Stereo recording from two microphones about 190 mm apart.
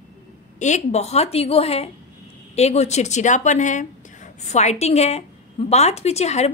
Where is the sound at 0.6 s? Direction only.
40° left (ahead or behind).